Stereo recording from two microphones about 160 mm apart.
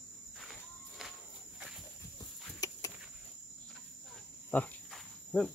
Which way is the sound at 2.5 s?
20° left (ahead or behind).